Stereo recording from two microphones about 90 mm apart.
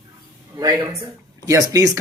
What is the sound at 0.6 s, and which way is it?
Speech, 45° right (ahead or behind).